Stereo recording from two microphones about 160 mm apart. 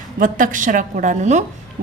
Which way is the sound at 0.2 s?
55° right (ahead or behind).